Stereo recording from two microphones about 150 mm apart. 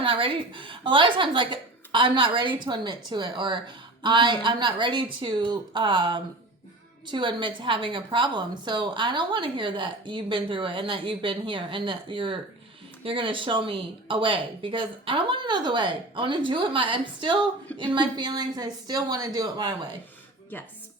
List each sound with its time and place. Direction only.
0.0 s a woman's voice: 35° right (ahead or behind)